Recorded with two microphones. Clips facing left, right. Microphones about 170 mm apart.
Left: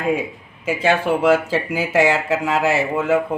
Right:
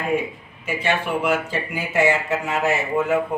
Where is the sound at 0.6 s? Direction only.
90° left.